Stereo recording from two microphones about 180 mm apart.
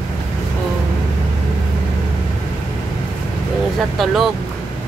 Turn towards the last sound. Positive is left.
turn(degrees=0)  # may be behind; listen again after turning